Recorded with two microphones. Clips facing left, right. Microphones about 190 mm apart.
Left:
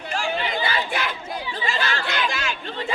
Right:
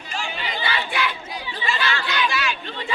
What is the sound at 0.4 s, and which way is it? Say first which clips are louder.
Chatter: left 2 dB; 45° left (ahead or behind).